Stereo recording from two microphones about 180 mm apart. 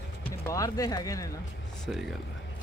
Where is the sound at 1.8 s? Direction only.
Centre (ahead or behind).